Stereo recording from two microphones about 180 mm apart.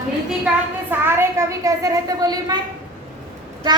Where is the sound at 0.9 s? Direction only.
15° right (ahead or behind).